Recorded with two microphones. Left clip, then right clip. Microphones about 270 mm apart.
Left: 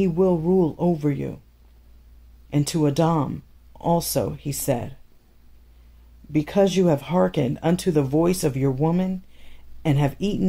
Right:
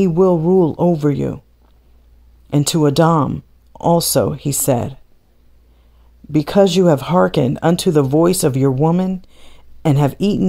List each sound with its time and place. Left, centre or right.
0.0 s speech: right
2.5 s speech: right
6.3 s speech: right